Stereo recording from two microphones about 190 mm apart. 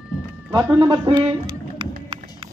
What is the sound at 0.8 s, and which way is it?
Speech, 25° right (ahead or behind).